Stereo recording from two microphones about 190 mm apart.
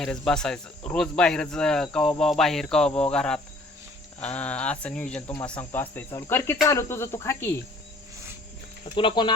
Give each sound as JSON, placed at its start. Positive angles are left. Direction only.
{"t": 0.0, "sound": "speech", "side_deg": 5}
{"t": 9.0, "sound": "speech", "side_deg": 25}